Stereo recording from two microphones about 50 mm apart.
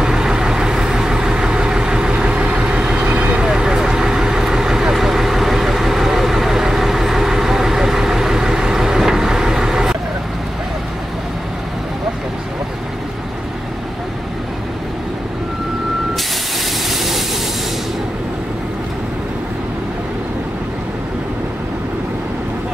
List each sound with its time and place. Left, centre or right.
0.0 s vehicle: centre
3.4 s vehicle: centre
16.9 s vehicle: centre